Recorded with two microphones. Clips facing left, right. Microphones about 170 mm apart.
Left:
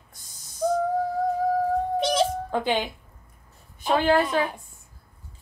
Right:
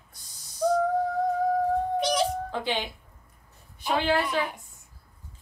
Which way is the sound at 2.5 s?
50° left (ahead or behind).